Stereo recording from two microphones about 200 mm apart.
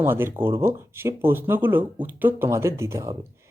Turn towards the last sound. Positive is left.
turn(degrees=-15)  # may be behind; listen again after turning